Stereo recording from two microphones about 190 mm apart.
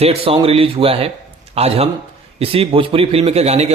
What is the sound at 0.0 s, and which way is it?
A man's voice, 30° right (ahead or behind).